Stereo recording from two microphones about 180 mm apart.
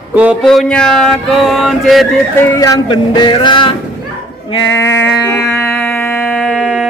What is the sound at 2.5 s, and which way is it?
Music, 20° left (ahead or behind).